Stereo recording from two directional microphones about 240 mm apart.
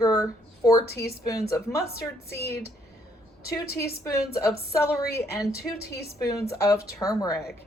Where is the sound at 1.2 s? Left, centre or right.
Centre.